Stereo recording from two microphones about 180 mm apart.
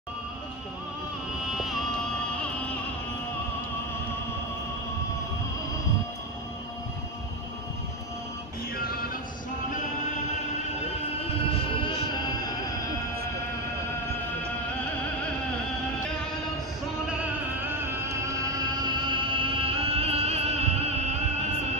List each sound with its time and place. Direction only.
1.6 s music: centre (ahead or behind)
8.7 s music: 55° left (ahead or behind)
11.5 s music: 25° left (ahead or behind)
18.0 s music: 20° right (ahead or behind); by 21.2 s 35° right (ahead or behind)